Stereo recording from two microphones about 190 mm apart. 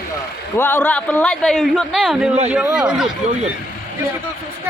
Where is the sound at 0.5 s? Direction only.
10° left (ahead or behind).